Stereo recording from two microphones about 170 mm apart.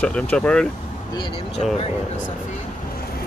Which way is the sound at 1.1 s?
30° left (ahead or behind).